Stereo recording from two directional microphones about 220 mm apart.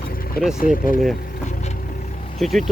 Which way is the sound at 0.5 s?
40° left (ahead or behind).